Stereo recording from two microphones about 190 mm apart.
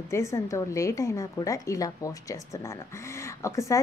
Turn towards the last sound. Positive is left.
turn(degrees=15)  # may be behind; listen again after turning